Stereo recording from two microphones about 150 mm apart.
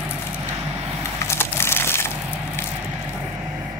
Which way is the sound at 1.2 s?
15° left (ahead or behind).